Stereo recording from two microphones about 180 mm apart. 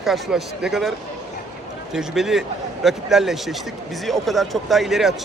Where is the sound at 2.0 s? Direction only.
Centre (ahead or behind).